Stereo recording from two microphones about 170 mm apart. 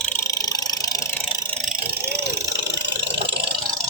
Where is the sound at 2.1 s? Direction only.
85° right.